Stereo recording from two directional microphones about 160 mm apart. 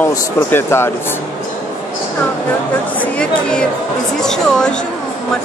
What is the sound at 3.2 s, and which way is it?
Speech, 5° left (ahead or behind).